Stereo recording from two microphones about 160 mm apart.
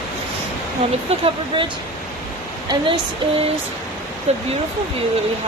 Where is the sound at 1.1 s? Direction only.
40° right (ahead or behind).